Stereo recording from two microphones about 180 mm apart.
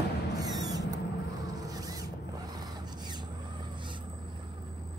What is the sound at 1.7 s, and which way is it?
Mechanisms, 20° right (ahead or behind).